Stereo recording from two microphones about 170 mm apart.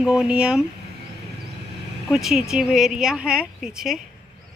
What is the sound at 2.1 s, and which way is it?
Speech, centre (ahead or behind).